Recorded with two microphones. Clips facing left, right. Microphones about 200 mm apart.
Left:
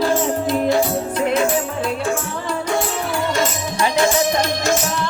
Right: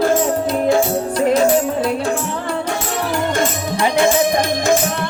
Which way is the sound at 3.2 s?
50° right (ahead or behind).